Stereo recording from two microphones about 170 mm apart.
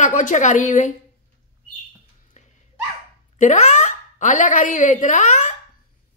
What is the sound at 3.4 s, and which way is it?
Speech, 45° left (ahead or behind).